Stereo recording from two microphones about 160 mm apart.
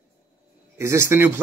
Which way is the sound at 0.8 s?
15° right (ahead or behind).